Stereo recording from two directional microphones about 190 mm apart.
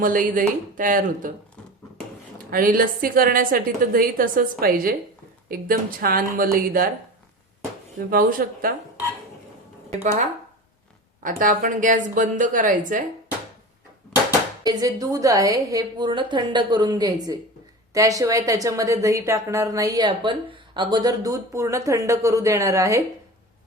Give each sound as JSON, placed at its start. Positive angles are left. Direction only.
{"t": 0.0, "sound": "a woman's voice", "side_deg": -45}
{"t": 2.5, "sound": "a woman's voice", "side_deg": -50}
{"t": 7.9, "sound": "a woman's voice", "side_deg": -45}
{"t": 9.9, "sound": "a woman's voice", "side_deg": -35}
{"t": 14.6, "sound": "a woman's voice", "side_deg": -20}